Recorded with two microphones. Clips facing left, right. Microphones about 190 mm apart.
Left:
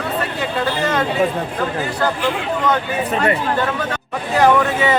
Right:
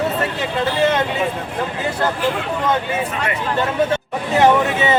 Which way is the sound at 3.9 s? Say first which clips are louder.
Right 2 dB; 20° right (ahead or behind).